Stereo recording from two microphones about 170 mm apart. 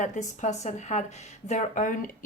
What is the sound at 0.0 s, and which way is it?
Speech, 45° left (ahead or behind).